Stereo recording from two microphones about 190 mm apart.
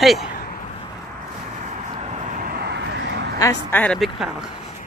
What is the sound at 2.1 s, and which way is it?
Vehicle, 40° right (ahead or behind).